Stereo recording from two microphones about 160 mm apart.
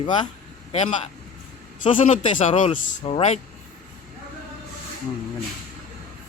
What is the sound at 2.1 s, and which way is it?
Speech, 50° left (ahead or behind).